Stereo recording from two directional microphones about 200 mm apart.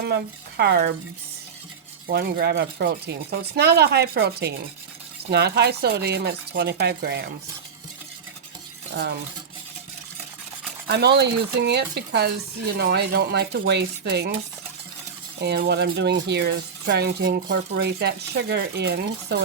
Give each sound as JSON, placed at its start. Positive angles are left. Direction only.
{"t": 0.0, "sound": "speech", "side_deg": -55}
{"t": 2.0, "sound": "speech", "side_deg": -50}
{"t": 8.9, "sound": "a sound", "side_deg": -60}
{"t": 10.8, "sound": "speech", "side_deg": -55}
{"t": 15.4, "sound": "speech", "side_deg": -55}